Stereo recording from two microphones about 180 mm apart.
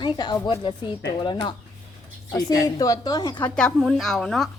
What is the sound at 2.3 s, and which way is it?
A woman's voice, 20° left (ahead or behind).